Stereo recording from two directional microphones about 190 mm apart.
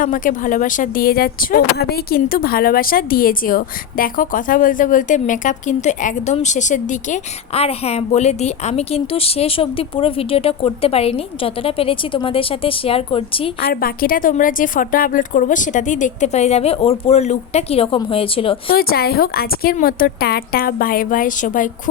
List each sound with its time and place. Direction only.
0.0 s speech: 45° left (ahead or behind); by 13.5 s 30° left (ahead or behind)
13.6 s speech: 50° left (ahead or behind); by 18.5 s 30° left (ahead or behind)
18.7 s speech: 50° left (ahead or behind)